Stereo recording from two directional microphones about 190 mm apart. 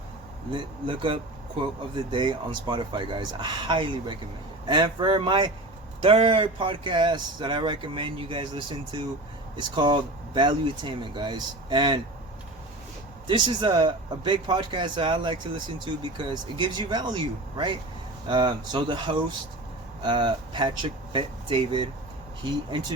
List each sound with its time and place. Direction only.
0.5 s speech: 25° right (ahead or behind)
13.2 s speech: 25° right (ahead or behind)